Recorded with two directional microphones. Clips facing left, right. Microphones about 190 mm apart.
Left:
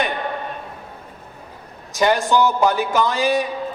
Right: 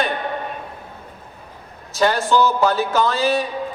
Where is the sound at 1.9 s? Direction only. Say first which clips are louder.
Even; 15° left (ahead or behind).